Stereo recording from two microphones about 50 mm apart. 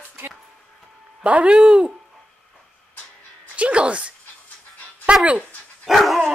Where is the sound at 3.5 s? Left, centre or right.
Right.